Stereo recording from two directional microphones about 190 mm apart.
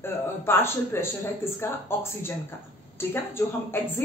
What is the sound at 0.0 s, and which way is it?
A woman's voice, 10° left (ahead or behind).